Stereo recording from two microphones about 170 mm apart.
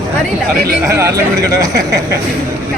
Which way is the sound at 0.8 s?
20° right (ahead or behind).